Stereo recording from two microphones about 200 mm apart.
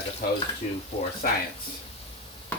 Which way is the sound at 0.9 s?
30° left (ahead or behind).